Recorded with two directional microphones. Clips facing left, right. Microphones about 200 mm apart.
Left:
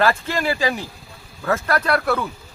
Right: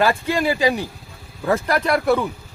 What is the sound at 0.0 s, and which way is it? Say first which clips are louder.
Speech: right 1 dB; 15° right (ahead or behind).